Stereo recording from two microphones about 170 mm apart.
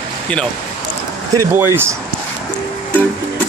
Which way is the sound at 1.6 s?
15° right (ahead or behind).